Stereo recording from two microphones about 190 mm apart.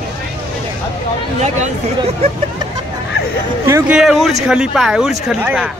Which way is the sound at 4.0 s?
Centre (ahead or behind).